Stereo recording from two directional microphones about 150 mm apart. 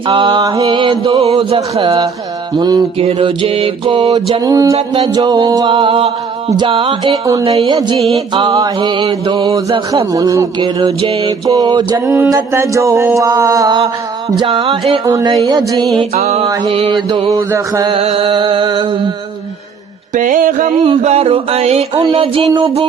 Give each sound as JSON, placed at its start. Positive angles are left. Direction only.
{"t": 0.1, "sound": "mantra", "side_deg": -30}
{"t": 3.0, "sound": "mantra", "side_deg": -40}
{"t": 7.4, "sound": "mantra", "side_deg": -40}
{"t": 10.8, "sound": "mantra", "side_deg": -35}
{"t": 11.9, "sound": "mantra", "side_deg": -15}
{"t": 14.3, "sound": "mantra", "side_deg": -35}
{"t": 16.6, "sound": "mantra", "side_deg": -40}
{"t": 17.9, "sound": "mantra", "side_deg": -40}
{"t": 20.1, "sound": "music", "side_deg": -60}
{"t": 21.0, "sound": "mantra", "side_deg": -45}